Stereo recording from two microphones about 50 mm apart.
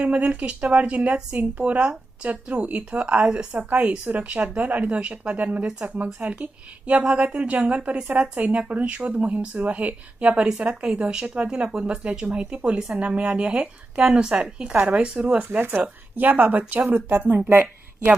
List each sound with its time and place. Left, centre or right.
0.0 s speech: right
3.8 s speech: right
16.1 s speech: right